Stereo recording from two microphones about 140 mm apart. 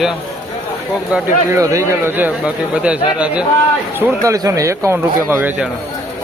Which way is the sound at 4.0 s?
20° right (ahead or behind).